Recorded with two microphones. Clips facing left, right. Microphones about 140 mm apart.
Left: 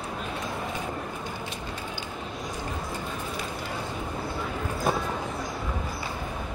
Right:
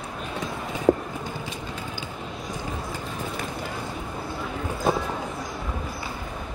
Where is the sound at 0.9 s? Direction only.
90° right.